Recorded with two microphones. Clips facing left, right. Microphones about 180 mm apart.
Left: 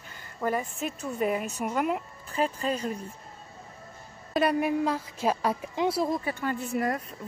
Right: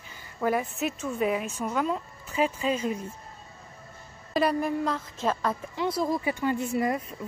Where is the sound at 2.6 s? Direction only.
40° left (ahead or behind).